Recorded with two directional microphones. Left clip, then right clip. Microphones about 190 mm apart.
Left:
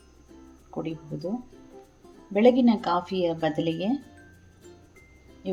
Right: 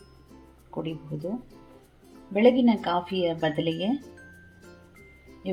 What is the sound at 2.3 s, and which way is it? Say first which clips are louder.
Speech: even; centre (ahead or behind).